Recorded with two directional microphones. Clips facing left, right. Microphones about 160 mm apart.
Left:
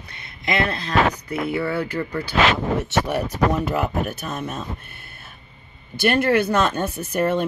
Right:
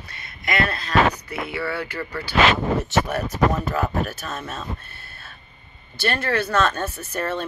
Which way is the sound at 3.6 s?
15° left (ahead or behind).